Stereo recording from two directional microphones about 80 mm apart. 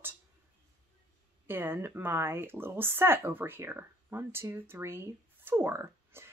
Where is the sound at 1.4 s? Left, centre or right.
Right.